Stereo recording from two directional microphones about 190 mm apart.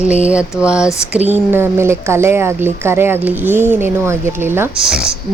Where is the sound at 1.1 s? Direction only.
10° right (ahead or behind).